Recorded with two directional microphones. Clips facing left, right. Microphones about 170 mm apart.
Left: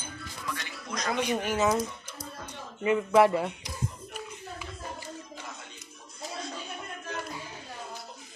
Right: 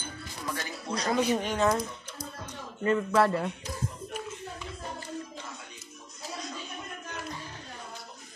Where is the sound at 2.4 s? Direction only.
10° left (ahead or behind).